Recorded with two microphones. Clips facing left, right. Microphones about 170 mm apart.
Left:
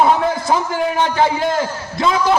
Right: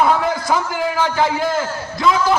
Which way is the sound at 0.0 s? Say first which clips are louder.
Left 2 dB; 25° left (ahead or behind).